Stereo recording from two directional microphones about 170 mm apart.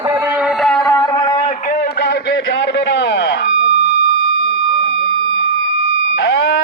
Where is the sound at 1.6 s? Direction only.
65° left (ahead or behind); by 3.4 s 90° left.